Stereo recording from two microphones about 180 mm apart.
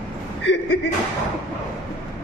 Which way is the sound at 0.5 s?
75° left (ahead or behind).